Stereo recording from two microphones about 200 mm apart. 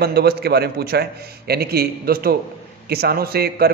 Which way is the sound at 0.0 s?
50° right (ahead or behind).